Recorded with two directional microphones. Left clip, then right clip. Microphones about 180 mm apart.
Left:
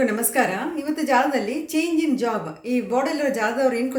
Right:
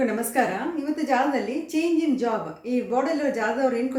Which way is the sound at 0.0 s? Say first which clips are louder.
Left 2 dB; 10° left (ahead or behind).